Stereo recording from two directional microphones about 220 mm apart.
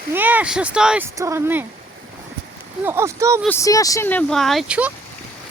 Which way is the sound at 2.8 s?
10° right (ahead or behind).